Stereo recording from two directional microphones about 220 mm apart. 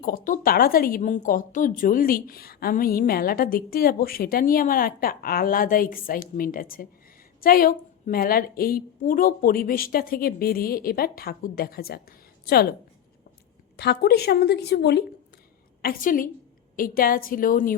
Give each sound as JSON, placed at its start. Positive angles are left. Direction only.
{"t": 0.0, "sound": "a woman's voice", "side_deg": 40}
{"t": 13.7, "sound": "a woman's voice", "side_deg": 50}